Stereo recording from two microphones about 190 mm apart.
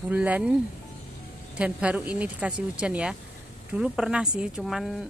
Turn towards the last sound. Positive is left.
turn(degrees=0)  # may be behind; listen again after turning